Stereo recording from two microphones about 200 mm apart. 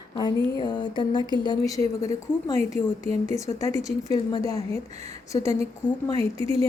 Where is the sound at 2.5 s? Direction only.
30° right (ahead or behind).